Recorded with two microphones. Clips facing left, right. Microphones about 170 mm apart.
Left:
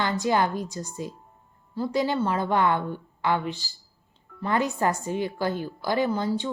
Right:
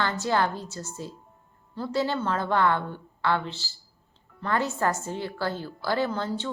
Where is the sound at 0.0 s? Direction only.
15° left (ahead or behind).